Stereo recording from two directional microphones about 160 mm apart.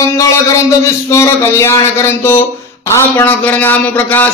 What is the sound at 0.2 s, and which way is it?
Speech, 20° left (ahead or behind).